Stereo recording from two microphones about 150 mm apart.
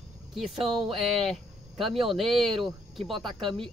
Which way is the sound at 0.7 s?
Centre (ahead or behind).